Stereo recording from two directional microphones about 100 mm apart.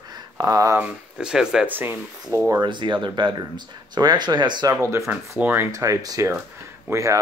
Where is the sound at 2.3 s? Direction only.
35° right (ahead or behind).